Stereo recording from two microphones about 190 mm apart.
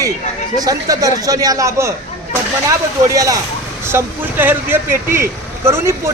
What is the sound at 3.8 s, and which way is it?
Speech, 10° right (ahead or behind).